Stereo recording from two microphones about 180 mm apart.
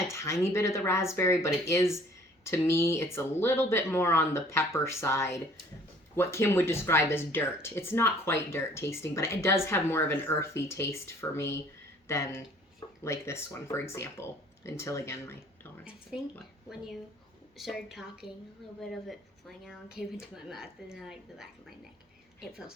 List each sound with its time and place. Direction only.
0.0 s a sound: 15° left (ahead or behind)
0.4 s speech: 15° left (ahead or behind)
15.8 s speech: centre (ahead or behind)
17.6 s speech: centre (ahead or behind)